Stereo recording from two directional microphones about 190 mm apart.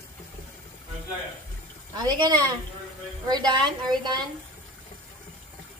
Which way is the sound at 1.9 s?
20° right (ahead or behind).